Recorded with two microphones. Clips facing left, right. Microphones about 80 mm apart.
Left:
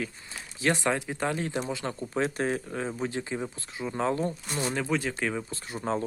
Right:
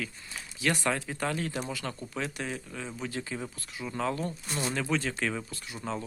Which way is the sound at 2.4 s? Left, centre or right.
Left.